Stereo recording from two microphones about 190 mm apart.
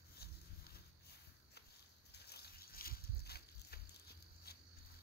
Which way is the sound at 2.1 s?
55° left (ahead or behind).